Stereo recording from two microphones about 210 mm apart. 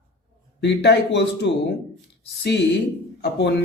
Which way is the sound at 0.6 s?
55° left (ahead or behind).